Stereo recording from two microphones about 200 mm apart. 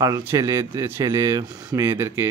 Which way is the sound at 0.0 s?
15° right (ahead or behind).